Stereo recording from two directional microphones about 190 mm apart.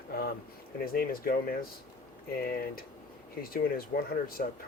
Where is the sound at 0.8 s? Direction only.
50° left (ahead or behind).